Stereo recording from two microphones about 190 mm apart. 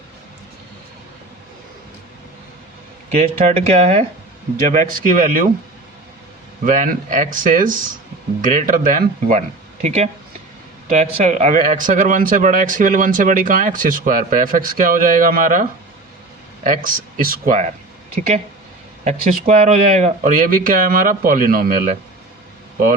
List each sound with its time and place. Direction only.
3.1 s speech: 35° right (ahead or behind)
6.7 s speech: 45° right (ahead or behind)
16.6 s speech: 45° right (ahead or behind)
19.0 s speech: 35° right (ahead or behind)